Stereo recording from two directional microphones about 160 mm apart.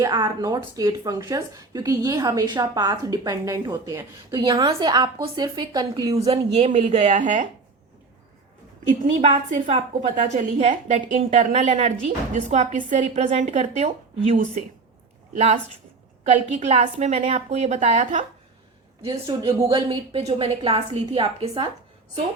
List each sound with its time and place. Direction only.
0.0 s speech: 25° right (ahead or behind)
6.1 s a woman's voice: 40° right (ahead or behind)
9.0 s a woman's voice: 45° right (ahead or behind)
19.0 s a woman's voice: 30° right (ahead or behind)